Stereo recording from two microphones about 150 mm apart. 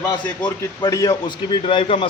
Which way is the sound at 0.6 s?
25° left (ahead or behind).